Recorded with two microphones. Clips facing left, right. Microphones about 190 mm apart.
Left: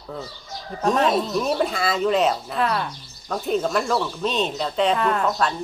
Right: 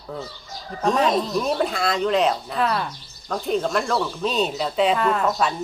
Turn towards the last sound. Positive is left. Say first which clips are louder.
# right 1 dB
turn(degrees=0)  # may be behind; listen again after turning